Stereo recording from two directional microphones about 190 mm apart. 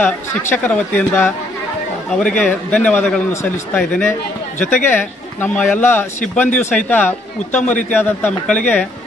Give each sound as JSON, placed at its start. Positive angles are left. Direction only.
{"t": 0.0, "sound": "speech", "side_deg": 10}